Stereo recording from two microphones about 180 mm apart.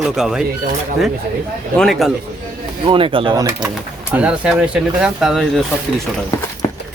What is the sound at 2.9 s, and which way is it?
Speech, 30° right (ahead or behind).